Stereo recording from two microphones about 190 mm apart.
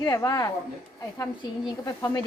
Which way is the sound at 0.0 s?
20° left (ahead or behind).